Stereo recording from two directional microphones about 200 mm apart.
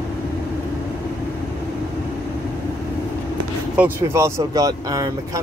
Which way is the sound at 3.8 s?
15° right (ahead or behind).